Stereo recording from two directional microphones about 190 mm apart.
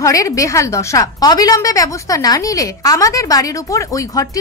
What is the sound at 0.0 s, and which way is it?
A woman's voice, 15° left (ahead or behind).